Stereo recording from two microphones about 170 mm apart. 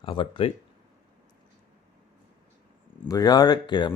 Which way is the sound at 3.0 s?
20° left (ahead or behind).